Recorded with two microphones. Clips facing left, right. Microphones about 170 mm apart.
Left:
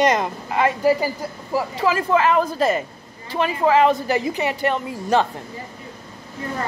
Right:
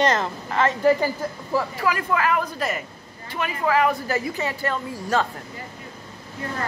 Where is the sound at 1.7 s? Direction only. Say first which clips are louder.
Left 5 dB; 25° left (ahead or behind).